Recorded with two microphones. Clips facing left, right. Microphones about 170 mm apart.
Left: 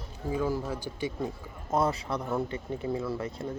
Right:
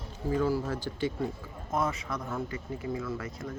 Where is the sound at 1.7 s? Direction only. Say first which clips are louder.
Left 3 dB; 35° left (ahead or behind).